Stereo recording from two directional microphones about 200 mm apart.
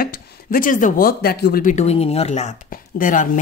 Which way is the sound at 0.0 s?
45° left (ahead or behind).